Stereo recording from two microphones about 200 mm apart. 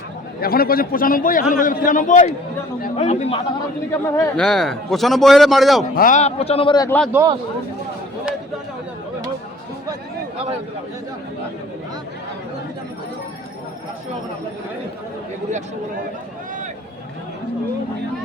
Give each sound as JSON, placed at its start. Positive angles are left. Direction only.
{"t": 0.4, "sound": "a man's voice", "side_deg": 50}
{"t": 4.4, "sound": "a man's voice", "side_deg": 5}
{"t": 6.0, "sound": "a man's voice", "side_deg": 40}
{"t": 7.1, "sound": "speech", "side_deg": -15}